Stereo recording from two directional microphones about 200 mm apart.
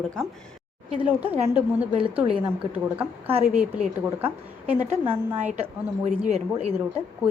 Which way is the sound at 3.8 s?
30° right (ahead or behind).